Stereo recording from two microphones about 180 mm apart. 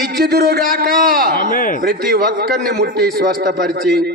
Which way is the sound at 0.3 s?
60° right (ahead or behind).